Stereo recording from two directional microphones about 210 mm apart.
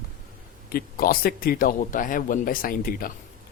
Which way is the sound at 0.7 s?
45° left (ahead or behind).